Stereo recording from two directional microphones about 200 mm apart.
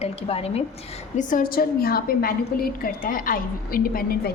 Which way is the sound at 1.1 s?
40° left (ahead or behind).